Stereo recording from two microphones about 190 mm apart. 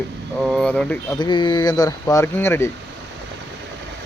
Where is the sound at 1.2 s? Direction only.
25° left (ahead or behind).